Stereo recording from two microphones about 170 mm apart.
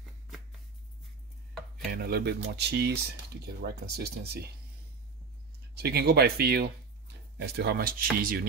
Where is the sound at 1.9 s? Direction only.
70° right (ahead or behind).